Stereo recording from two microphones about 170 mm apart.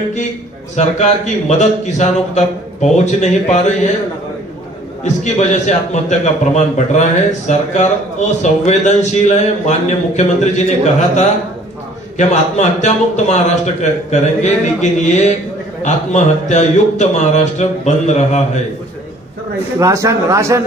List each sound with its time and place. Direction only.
0.7 s a man's voice: 40° left (ahead or behind)
5.0 s a man's voice: 45° left (ahead or behind)
12.2 s a man's voice: 45° left (ahead or behind)
19.8 s speech: 15° right (ahead or behind)